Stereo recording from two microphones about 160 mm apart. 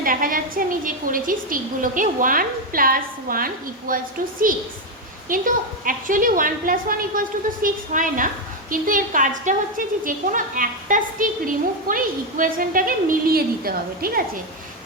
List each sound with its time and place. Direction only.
0.0 s a woman's voice: 60° right (ahead or behind)